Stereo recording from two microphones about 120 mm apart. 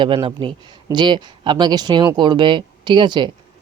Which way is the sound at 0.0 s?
45° right (ahead or behind).